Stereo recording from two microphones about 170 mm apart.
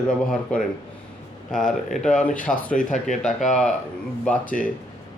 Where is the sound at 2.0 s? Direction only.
5° left (ahead or behind).